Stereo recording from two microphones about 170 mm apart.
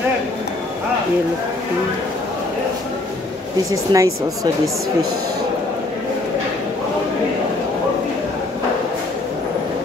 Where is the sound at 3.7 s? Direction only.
20° right (ahead or behind).